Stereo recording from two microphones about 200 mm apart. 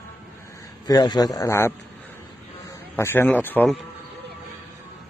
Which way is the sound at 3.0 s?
10° left (ahead or behind).